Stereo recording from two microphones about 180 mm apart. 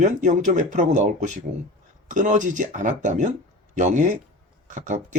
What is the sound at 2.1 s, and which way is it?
Speech, 45° right (ahead or behind).